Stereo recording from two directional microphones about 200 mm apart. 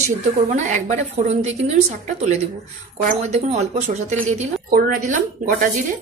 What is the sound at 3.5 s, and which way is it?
A woman's voice, 35° right (ahead or behind).